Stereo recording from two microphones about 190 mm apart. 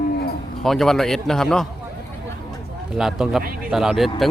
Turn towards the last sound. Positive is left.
turn(degrees=0)  # may be behind; listen again after turning